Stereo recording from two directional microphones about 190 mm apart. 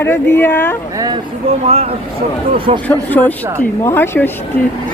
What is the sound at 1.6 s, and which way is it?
Speech, 35° right (ahead or behind).